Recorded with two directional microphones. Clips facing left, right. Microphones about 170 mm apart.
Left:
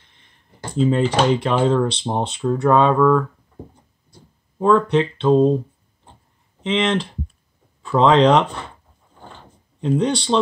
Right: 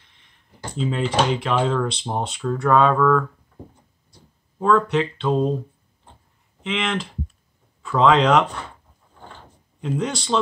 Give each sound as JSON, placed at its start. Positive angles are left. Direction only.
{"t": 0.6, "sound": "computer keyboard", "side_deg": 45}
{"t": 0.9, "sound": "speech", "side_deg": 40}
{"t": 1.7, "sound": "speech", "side_deg": 25}
{"t": 4.6, "sound": "speech", "side_deg": 20}
{"t": 6.6, "sound": "speech", "side_deg": 25}
{"t": 9.8, "sound": "speech", "side_deg": 30}